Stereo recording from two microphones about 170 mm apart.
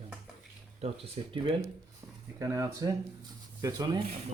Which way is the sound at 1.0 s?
30° right (ahead or behind).